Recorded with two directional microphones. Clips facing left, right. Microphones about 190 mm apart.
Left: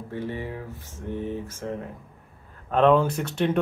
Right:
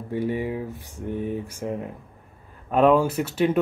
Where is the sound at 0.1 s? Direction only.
15° right (ahead or behind).